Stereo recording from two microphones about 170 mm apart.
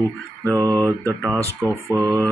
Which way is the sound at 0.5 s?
20° right (ahead or behind).